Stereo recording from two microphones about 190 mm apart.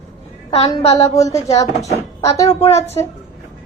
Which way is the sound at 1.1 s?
15° left (ahead or behind).